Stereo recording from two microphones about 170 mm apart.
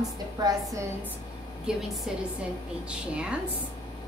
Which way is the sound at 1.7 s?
5° right (ahead or behind).